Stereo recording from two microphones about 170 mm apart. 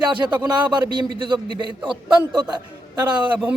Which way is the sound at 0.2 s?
15° right (ahead or behind).